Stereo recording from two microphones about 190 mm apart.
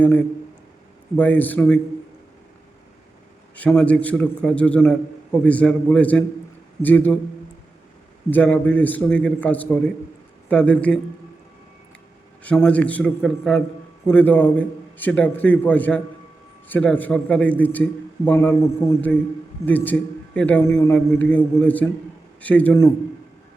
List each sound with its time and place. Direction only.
1.1 s a man's voice: 10° left (ahead or behind)
3.5 s a man's voice: 5° left (ahead or behind)
8.3 s a man's voice: 10° left (ahead or behind)
12.4 s a man's voice: 10° left (ahead or behind)